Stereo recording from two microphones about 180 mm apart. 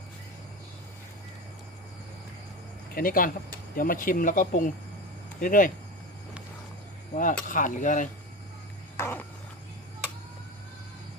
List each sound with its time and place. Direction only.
2.9 s speech: 50° left (ahead or behind)
7.1 s speech: 45° left (ahead or behind)
9.0 s a sound: 10° left (ahead or behind)